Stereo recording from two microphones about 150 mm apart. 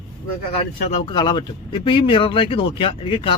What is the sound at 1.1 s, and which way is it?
Speech, 30° left (ahead or behind).